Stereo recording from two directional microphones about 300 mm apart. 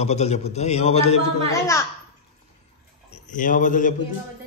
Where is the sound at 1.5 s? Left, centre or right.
Centre.